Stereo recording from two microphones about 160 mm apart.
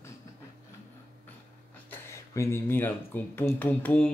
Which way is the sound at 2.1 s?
20° left (ahead or behind).